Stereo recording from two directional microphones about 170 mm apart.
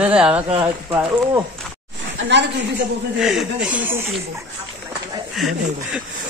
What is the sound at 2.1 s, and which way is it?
Speech, 90° right.